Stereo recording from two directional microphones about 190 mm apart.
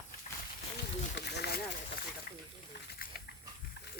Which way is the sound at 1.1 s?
60° left (ahead or behind).